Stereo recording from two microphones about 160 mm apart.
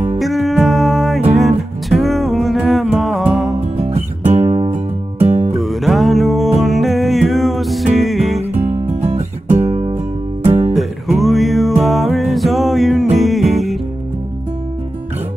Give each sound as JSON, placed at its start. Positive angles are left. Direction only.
{"t": 0.2, "sound": "music", "side_deg": 0}
{"t": 3.7, "sound": "music", "side_deg": -40}
{"t": 5.2, "sound": "music", "side_deg": -50}
{"t": 5.6, "sound": "music", "side_deg": 0}
{"t": 9.0, "sound": "music", "side_deg": -40}
{"t": 10.7, "sound": "music", "side_deg": 0}